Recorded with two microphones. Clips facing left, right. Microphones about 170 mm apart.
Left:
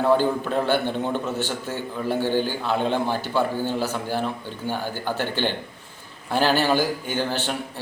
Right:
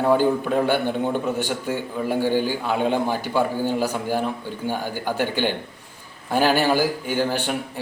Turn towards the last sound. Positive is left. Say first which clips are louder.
# right 3 dB
turn(degrees=-10)  # may be behind; listen again after turning